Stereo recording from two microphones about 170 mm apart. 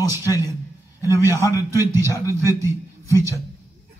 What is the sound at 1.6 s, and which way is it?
Speech, 15° right (ahead or behind).